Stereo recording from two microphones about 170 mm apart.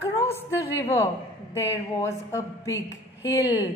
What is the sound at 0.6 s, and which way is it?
A woman's voice, 15° left (ahead or behind).